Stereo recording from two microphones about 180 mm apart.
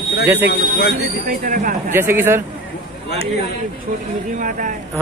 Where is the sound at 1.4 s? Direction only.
50° right (ahead or behind).